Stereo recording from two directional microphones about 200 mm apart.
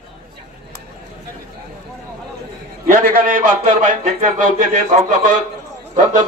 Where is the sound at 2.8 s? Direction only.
40° right (ahead or behind).